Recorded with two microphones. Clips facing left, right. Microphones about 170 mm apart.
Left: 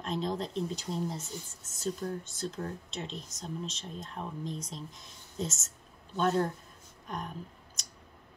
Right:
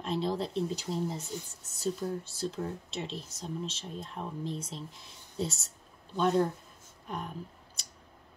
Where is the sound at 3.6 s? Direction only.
30° right (ahead or behind).